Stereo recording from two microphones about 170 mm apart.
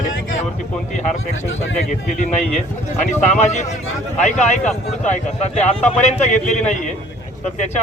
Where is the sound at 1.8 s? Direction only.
45° left (ahead or behind).